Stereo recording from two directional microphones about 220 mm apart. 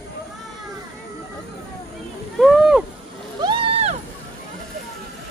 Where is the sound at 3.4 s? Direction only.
25° right (ahead or behind).